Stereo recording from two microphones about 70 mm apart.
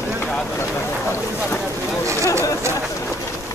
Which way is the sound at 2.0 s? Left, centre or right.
Right.